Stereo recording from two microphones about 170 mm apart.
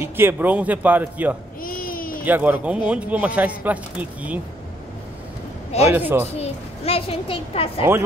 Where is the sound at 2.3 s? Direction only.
10° right (ahead or behind).